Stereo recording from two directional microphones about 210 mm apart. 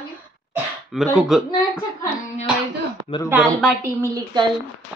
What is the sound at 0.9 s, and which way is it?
Speech, centre (ahead or behind).